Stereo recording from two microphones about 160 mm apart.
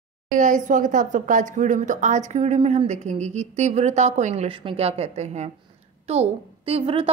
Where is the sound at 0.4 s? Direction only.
50° right (ahead or behind).